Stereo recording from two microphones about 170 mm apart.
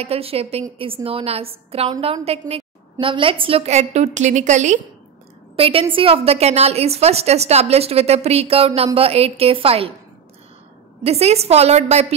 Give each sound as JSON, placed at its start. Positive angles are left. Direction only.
{"t": 0.0, "sound": "a woman's voice", "side_deg": -35}
{"t": 5.6, "sound": "a woman's voice", "side_deg": -35}
{"t": 11.1, "sound": "a woman's voice", "side_deg": -35}